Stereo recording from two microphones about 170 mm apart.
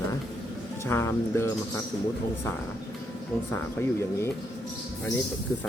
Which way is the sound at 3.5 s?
15° left (ahead or behind).